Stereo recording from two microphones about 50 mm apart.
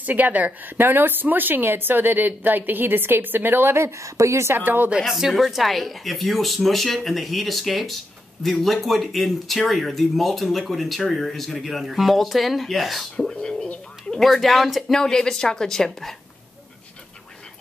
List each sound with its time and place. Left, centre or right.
0.0 s a woman's voice: right
0.7 s speech: right
4.6 s a woman's voice: right
5.0 s speech: centre
14.2 s speech: centre
15.0 s a woman's voice: centre